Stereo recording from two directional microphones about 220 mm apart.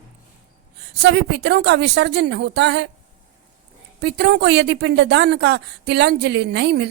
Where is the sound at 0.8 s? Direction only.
50° right (ahead or behind).